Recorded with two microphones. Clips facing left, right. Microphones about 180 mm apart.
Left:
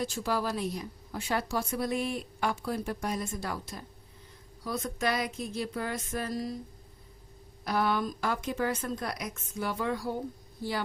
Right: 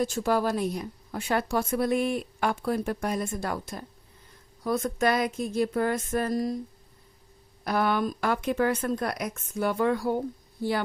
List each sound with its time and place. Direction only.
0.0 s a woman's voice: 50° right (ahead or behind)
4.6 s a sound: 50° right (ahead or behind)
7.6 s a woman's voice: 55° right (ahead or behind)